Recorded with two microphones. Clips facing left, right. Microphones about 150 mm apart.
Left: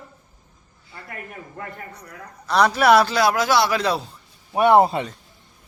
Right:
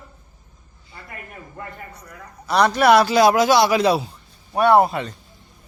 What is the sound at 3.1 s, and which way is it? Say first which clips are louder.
Speech: right 4 dB; 20° right (ahead or behind).